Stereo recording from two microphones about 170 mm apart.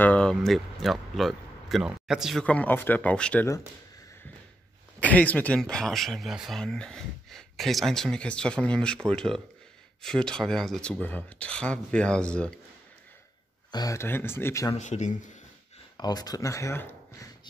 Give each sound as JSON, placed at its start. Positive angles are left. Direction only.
{"t": 0.0, "sound": "speech", "side_deg": 5}
{"t": 2.4, "sound": "speech", "side_deg": 10}
{"t": 5.0, "sound": "speech", "side_deg": 10}
{"t": 13.7, "sound": "speech", "side_deg": 20}
{"t": 14.8, "sound": "speech", "side_deg": 45}
{"t": 16.0, "sound": "speech", "side_deg": 25}